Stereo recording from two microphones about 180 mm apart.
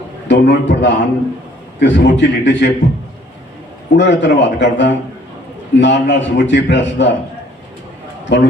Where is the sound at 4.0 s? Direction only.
75° left (ahead or behind).